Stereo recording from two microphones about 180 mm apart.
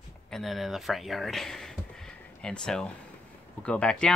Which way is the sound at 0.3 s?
Centre (ahead or behind).